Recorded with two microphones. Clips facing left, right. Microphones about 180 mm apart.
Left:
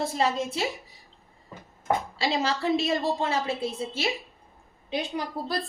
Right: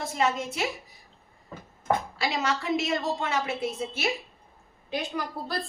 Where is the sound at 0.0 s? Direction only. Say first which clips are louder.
Left 1 dB; 30° left (ahead or behind).